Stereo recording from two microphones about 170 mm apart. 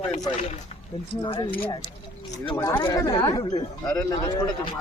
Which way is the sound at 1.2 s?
30° left (ahead or behind).